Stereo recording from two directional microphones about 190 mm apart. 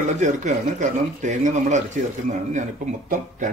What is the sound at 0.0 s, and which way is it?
Speech, 40° right (ahead or behind).